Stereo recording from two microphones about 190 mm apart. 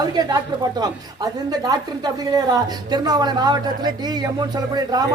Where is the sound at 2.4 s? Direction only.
20° right (ahead or behind).